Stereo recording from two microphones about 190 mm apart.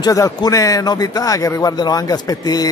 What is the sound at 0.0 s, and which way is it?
Speech, 20° left (ahead or behind).